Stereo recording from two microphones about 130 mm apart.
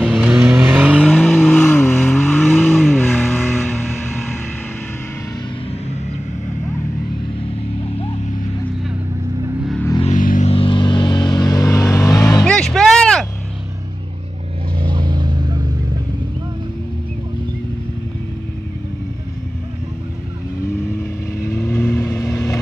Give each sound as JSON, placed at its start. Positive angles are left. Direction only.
{"t": 0.1, "sound": "vehicle", "side_deg": -5}
{"t": 1.1, "sound": "vehicle", "side_deg": 5}
{"t": 3.0, "sound": "vehicle", "side_deg": 15}
{"t": 10.1, "sound": "a sound", "side_deg": 90}
{"t": 10.5, "sound": "vehicle", "side_deg": 40}
{"t": 12.4, "sound": "music", "side_deg": 5}
{"t": 14.8, "sound": "vehicle", "side_deg": -35}
{"t": 21.5, "sound": "vehicle", "side_deg": 10}